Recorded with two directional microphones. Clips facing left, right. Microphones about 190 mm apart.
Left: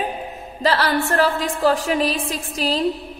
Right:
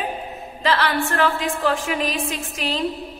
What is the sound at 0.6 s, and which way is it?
A woman's voice, 35° left (ahead or behind).